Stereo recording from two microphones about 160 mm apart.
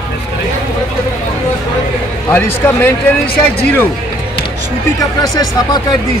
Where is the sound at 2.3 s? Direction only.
15° left (ahead or behind).